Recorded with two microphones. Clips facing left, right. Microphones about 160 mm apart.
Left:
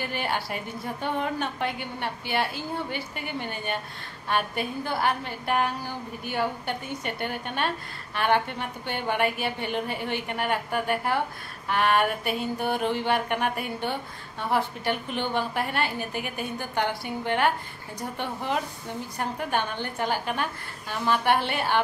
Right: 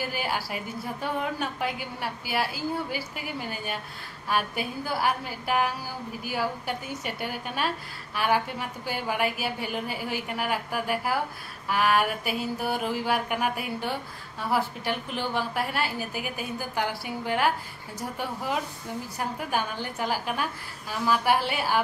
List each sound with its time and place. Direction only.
0.0 s a woman's voice: 5° right (ahead or behind)